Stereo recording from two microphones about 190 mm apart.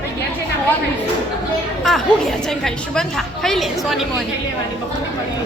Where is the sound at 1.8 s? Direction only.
Centre (ahead or behind).